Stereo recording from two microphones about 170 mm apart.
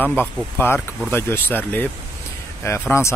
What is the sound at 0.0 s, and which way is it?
Speech, 10° left (ahead or behind).